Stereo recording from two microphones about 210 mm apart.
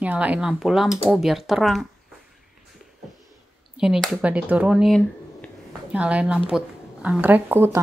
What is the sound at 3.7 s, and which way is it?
Speech, 5° right (ahead or behind).